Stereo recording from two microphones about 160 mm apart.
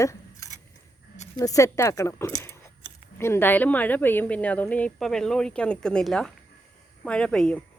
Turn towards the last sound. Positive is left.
turn(degrees=5)  # may be behind; listen again after turning